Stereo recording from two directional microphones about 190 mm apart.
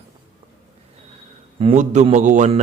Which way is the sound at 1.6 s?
35° right (ahead or behind).